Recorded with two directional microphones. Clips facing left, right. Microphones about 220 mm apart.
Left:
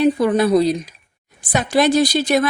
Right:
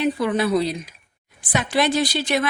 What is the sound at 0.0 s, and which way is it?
A woman's voice, 40° left (ahead or behind).